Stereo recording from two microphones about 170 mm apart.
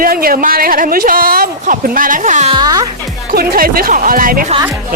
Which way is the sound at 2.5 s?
25° right (ahead or behind).